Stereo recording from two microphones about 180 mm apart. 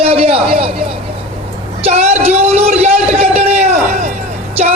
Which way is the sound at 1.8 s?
35° right (ahead or behind).